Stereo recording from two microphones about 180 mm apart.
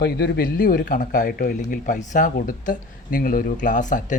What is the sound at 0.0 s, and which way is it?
Speech, 60° left (ahead or behind).